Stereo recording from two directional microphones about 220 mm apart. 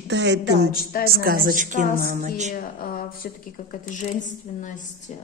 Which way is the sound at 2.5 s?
40° left (ahead or behind).